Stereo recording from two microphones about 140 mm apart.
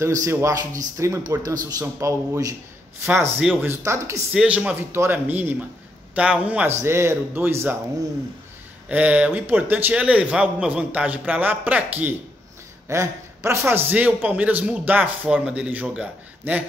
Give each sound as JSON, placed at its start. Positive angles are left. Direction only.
{"t": 0.0, "sound": "a man's voice", "side_deg": -20}
{"t": 3.6, "sound": "a man's voice", "side_deg": -20}
{"t": 4.3, "sound": "a man's voice", "side_deg": -5}
{"t": 8.8, "sound": "a man's voice", "side_deg": -10}